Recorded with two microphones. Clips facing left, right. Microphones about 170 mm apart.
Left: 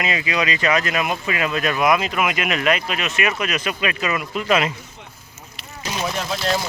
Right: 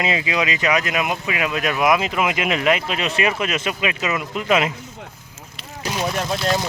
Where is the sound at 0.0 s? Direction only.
20° right (ahead or behind).